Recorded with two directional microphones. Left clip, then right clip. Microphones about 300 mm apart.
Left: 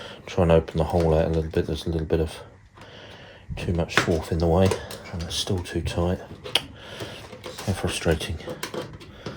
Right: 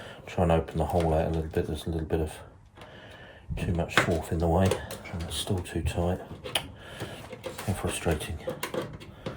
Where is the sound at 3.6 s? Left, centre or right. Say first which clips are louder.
Left 2 dB; left.